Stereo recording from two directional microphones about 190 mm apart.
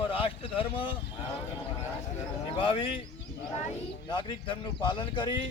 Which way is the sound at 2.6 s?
25° left (ahead or behind).